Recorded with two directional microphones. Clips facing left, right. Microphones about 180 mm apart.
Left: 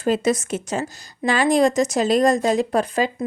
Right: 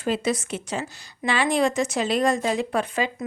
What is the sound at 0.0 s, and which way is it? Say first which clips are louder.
A woman's voice: left 5 dB; 45° left (ahead or behind).